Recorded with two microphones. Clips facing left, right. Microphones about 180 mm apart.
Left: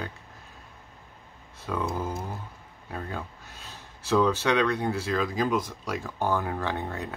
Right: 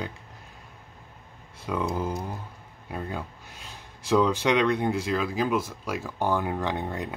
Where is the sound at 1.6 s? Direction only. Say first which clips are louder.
Right 2 dB; 15° right (ahead or behind).